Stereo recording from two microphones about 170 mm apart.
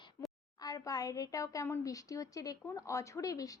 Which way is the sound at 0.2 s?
15° left (ahead or behind).